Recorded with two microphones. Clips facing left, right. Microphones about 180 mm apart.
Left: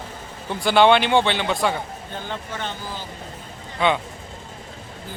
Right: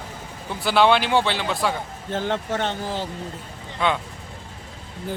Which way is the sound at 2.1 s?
75° right (ahead or behind).